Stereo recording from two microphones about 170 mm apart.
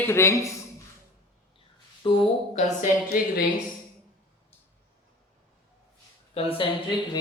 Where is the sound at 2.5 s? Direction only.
45° left (ahead or behind).